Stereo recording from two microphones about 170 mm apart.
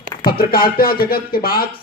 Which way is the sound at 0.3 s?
60° left (ahead or behind).